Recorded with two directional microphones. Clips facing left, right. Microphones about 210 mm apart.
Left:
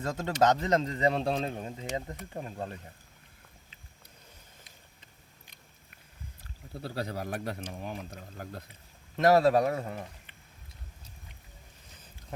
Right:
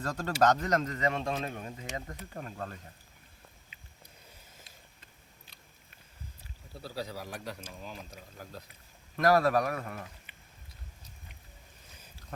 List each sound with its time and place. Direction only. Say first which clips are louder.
0.0 s a man's voice: left 1 dB; 20° left (ahead or behind)
6.8 s speech: left 4 dB; 60° left (ahead or behind)
9.1 s a man's voice: left 3 dB; 25° left (ahead or behind)